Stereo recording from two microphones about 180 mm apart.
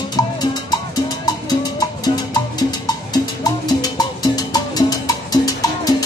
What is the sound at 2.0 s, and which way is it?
Music, 20° left (ahead or behind).